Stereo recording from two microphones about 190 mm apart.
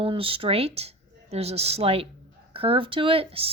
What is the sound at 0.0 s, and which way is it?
Speech, 30° right (ahead or behind).